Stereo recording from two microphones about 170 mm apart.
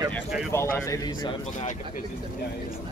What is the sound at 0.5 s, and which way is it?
Speech, 15° left (ahead or behind).